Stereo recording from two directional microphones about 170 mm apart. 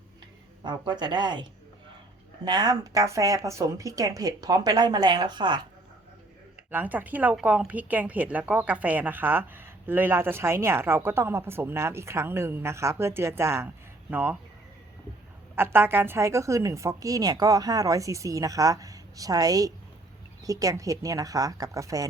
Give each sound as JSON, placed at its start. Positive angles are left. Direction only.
{"t": 0.6, "sound": "a woman's voice", "side_deg": -25}
{"t": 6.7, "sound": "speech", "side_deg": -10}
{"t": 15.5, "sound": "a woman's voice", "side_deg": -15}